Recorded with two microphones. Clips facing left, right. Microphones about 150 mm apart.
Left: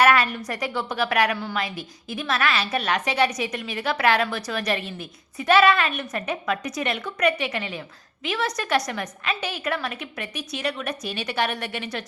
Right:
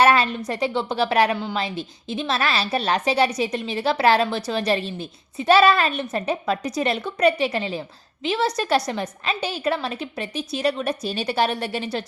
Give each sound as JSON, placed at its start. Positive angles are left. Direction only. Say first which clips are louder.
{"t": 0.0, "sound": "a woman's voice", "louder": "right 2 dB", "side_deg": -25}